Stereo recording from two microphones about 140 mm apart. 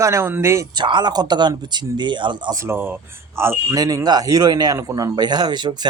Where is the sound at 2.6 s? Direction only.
15° right (ahead or behind).